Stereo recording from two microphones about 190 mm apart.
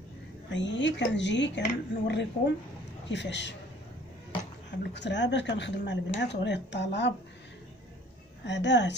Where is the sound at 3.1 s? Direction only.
65° left (ahead or behind).